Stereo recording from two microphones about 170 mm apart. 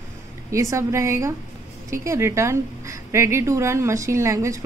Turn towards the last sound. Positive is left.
turn(degrees=-20)  # may be behind; listen again after turning